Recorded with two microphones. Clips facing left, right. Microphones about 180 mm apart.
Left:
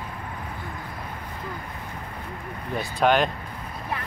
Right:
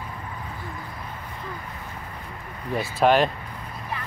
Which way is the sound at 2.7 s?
Centre (ahead or behind).